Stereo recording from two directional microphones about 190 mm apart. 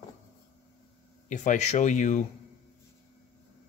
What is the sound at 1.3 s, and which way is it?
Speech, 40° left (ahead or behind).